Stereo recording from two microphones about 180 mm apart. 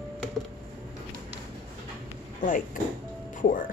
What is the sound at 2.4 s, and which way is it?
Speech, 45° left (ahead or behind).